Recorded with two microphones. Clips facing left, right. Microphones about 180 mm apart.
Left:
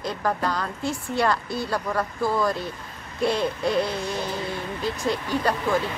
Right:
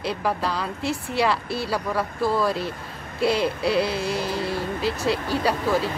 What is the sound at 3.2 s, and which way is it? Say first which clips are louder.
Music: right 1 dB; 5° right (ahead or behind).